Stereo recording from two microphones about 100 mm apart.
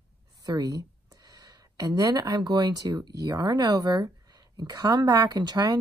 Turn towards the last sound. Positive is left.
turn(degrees=-45)  # may be behind; listen again after turning